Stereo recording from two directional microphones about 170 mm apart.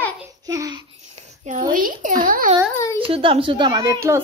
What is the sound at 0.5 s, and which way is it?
Babbling, 20° right (ahead or behind).